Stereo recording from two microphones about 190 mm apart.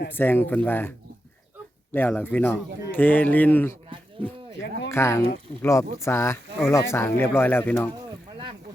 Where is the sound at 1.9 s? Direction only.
10° left (ahead or behind).